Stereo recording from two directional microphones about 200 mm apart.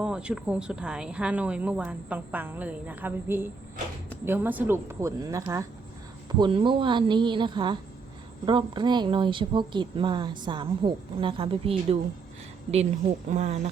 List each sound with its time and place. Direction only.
0.0 s a woman's voice: 5° right (ahead or behind); by 11.9 s 30° right (ahead or behind)
13.3 s speech: 35° right (ahead or behind)